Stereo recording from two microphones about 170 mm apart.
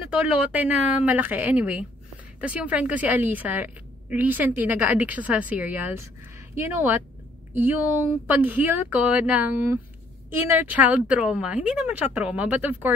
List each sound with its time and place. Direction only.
0.1 s a woman's voice: 5° right (ahead or behind)